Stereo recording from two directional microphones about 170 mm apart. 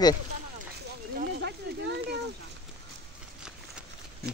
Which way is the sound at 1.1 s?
70° right (ahead or behind).